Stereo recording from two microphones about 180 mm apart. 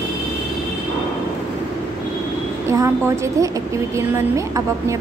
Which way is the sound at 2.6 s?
15° right (ahead or behind).